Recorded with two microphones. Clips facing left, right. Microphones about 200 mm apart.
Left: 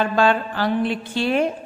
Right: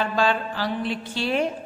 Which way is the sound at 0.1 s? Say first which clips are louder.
Left 4 dB; 55° left (ahead or behind).